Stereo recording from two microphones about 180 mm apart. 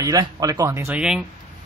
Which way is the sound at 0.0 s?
20° right (ahead or behind).